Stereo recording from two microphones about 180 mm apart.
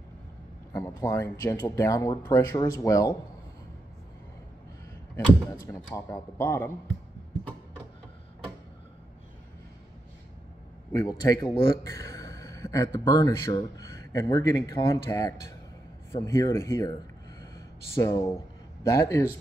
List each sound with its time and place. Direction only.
0.7 s speech: 20° left (ahead or behind)
5.1 s speech: 20° left (ahead or behind)
10.9 s speech: 20° left (ahead or behind)
17.9 s speech: 20° left (ahead or behind)